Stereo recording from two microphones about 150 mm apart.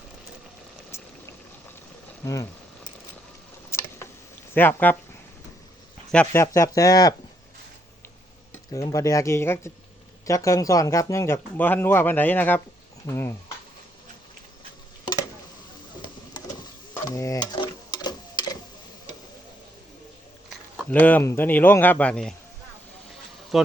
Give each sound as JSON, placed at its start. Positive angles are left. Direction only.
{"t": 0.9, "sound": "engine", "side_deg": 15}
{"t": 2.2, "sound": "speech", "side_deg": 20}
{"t": 3.7, "sound": "a sound", "side_deg": 15}
{"t": 4.5, "sound": "speech", "side_deg": 15}
{"t": 6.3, "sound": "speech", "side_deg": 20}
{"t": 8.7, "sound": "speech", "side_deg": 20}
{"t": 16.9, "sound": "stir", "side_deg": 20}
{"t": 20.9, "sound": "speech", "side_deg": 10}
{"t": 23.5, "sound": "speech", "side_deg": 0}